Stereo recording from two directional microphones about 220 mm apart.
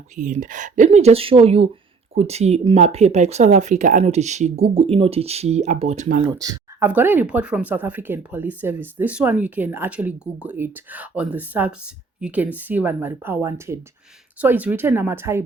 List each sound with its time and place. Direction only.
0.2 s speech: 35° right (ahead or behind)
6.2 s speech: 15° right (ahead or behind)